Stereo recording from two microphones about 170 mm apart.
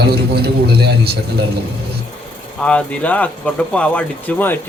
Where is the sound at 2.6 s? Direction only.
5° left (ahead or behind).